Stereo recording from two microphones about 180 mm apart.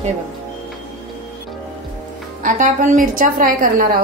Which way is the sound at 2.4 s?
45° right (ahead or behind).